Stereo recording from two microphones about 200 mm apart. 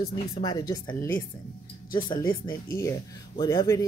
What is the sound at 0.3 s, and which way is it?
Speech, 20° left (ahead or behind).